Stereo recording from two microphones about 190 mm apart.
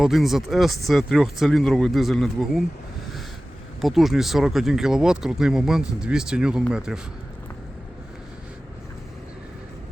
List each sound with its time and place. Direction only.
0.0 s speech: centre (ahead or behind)
3.8 s speech: centre (ahead or behind)